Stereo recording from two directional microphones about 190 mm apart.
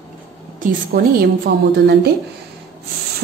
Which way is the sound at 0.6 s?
50° right (ahead or behind).